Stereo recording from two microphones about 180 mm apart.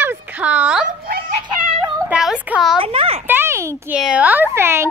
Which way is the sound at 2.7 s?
30° right (ahead or behind).